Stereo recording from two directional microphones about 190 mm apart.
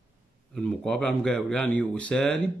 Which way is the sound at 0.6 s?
5° left (ahead or behind).